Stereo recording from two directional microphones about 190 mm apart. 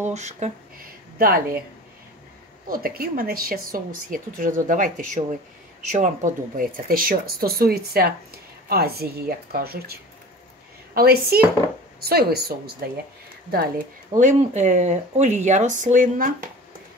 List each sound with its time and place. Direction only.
0.0 s speech: 35° right (ahead or behind)
2.7 s a woman's voice: 50° right (ahead or behind)
11.0 s a woman's voice: 55° right (ahead or behind)
14.1 s speech: 40° right (ahead or behind)